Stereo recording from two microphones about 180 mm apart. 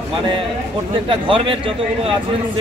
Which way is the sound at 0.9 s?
30° right (ahead or behind).